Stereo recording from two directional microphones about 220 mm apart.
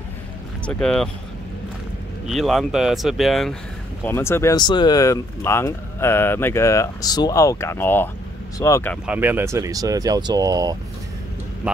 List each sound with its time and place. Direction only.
0.7 s speech: 5° left (ahead or behind)
2.2 s speech: centre (ahead or behind)
4.0 s speech: 10° left (ahead or behind)
9.0 s speech: 5° right (ahead or behind)